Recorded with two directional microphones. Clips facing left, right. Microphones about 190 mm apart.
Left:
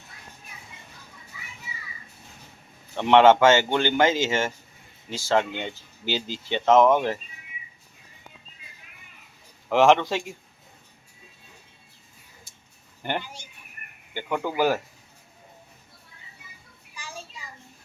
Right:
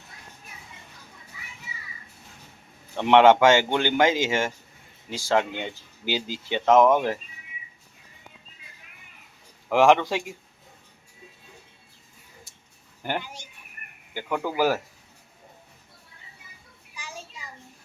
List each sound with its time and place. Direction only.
2.9 s speech: 10° right (ahead or behind)
9.6 s speech: 10° right (ahead or behind)
13.0 s speech: 5° right (ahead or behind)
16.9 s a sound: 15° right (ahead or behind)